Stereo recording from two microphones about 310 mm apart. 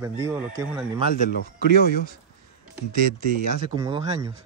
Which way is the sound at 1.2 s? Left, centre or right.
Left.